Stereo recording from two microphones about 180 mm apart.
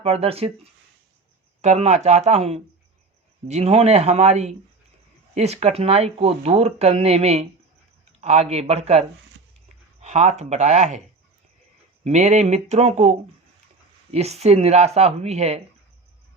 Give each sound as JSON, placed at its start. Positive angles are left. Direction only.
{"t": 0.0, "sound": "speech", "side_deg": -35}
{"t": 1.6, "sound": "speech", "side_deg": -35}
{"t": 12.0, "sound": "speech", "side_deg": -40}